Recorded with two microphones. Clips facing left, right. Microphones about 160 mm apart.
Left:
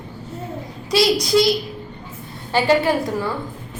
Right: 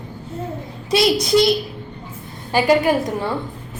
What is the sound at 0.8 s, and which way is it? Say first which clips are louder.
A child's voice: right 1 dB; 25° right (ahead or behind).